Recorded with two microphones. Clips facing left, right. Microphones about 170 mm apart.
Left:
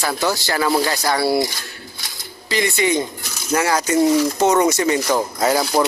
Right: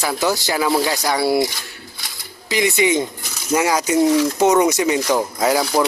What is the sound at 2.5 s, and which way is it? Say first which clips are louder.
Speech: right 2 dB; 15° right (ahead or behind).